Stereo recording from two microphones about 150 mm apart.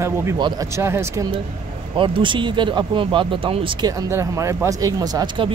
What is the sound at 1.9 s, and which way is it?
Speech, 35° right (ahead or behind).